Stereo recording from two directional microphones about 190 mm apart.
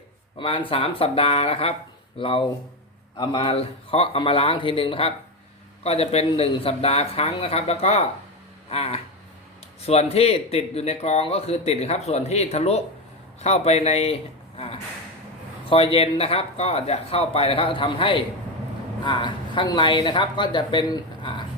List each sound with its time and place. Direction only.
0.3 s a man's voice: 25° left (ahead or behind)
15.7 s speech: 30° left (ahead or behind)